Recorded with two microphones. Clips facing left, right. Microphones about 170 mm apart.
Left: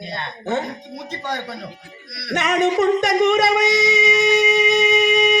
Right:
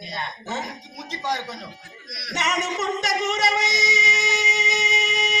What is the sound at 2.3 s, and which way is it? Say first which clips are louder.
Singing: left 8 dB; 60° left (ahead or behind).